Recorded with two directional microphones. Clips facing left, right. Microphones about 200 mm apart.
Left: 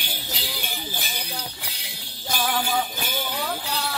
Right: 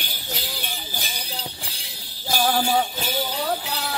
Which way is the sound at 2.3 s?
35° right (ahead or behind).